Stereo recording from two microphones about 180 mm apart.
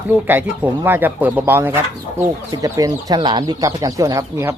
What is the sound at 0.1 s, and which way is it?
Speech, 10° right (ahead or behind).